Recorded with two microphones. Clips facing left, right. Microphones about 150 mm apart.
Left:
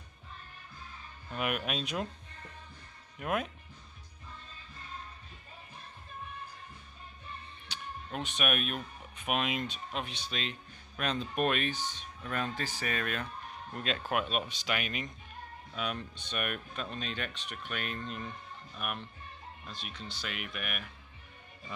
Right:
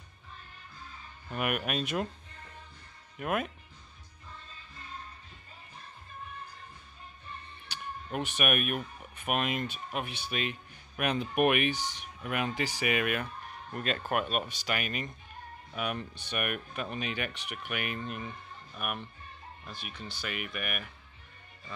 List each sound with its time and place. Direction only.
1.3 s speech: 5° right (ahead or behind)
3.2 s speech: centre (ahead or behind)
7.6 s speech: 5° right (ahead or behind)